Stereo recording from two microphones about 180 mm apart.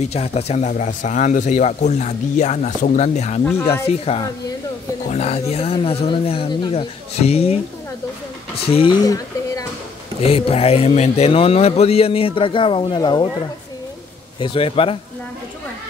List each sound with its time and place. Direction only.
0.0 s speech: 35° left (ahead or behind)
8.6 s speech: 30° left (ahead or behind)
9.0 s a sound: 20° left (ahead or behind)
10.2 s speech: 30° left (ahead or behind)
14.4 s speech: 30° left (ahead or behind)